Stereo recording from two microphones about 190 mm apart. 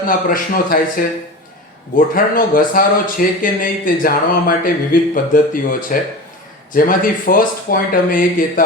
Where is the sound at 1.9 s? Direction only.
50° left (ahead or behind).